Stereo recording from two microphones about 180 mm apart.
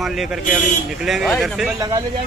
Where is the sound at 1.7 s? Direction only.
20° right (ahead or behind).